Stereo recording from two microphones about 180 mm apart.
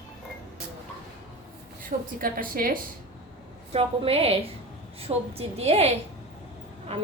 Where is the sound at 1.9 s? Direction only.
40° right (ahead or behind).